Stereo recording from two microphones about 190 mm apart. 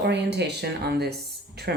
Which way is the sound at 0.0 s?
60° right (ahead or behind).